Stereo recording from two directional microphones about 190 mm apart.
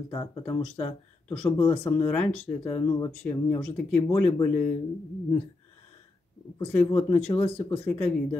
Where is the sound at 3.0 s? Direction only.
10° left (ahead or behind).